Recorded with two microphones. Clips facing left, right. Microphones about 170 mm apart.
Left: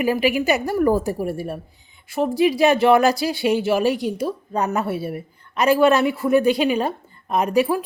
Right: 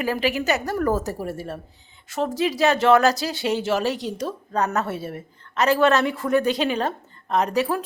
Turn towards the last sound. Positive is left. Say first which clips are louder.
# left 3 dB
turn(degrees=10)  # may be behind; listen again after turning